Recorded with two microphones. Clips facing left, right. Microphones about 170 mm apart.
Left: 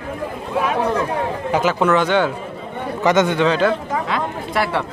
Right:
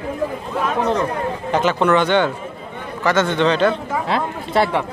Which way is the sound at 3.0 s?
15° left (ahead or behind).